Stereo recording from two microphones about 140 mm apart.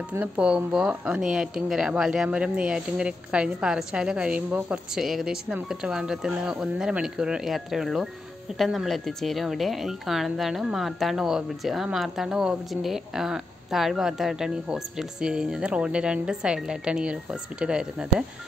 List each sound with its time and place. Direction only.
0.1 s speech: 10° right (ahead or behind)